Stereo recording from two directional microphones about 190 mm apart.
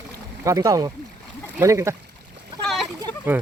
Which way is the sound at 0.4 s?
15° right (ahead or behind).